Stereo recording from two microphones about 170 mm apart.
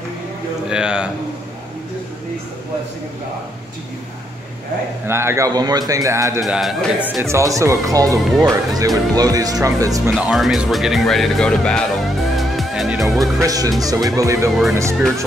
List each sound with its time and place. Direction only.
0.7 s speech: 5° right (ahead or behind)
5.0 s a man's voice: 15° right (ahead or behind)
6.4 s speech: centre (ahead or behind)
7.2 s a man's voice: 15° right (ahead or behind)
10.2 s speech: centre (ahead or behind)
12.4 s music: centre (ahead or behind)
13.4 s a man's voice: 20° right (ahead or behind)